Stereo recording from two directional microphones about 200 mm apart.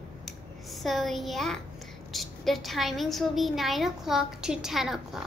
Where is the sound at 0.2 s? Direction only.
Centre (ahead or behind).